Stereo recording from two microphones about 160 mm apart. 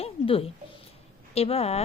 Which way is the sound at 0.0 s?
35° left (ahead or behind).